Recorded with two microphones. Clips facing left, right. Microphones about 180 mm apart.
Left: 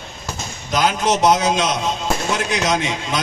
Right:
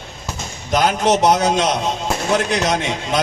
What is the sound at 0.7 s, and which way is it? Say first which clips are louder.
Speech: right 2 dB; 60° right (ahead or behind).